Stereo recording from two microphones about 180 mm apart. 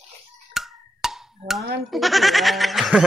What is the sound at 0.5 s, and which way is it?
Wood block, centre (ahead or behind).